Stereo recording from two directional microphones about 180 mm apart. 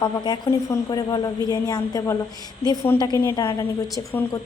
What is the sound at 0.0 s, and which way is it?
A woman's voice, 20° left (ahead or behind).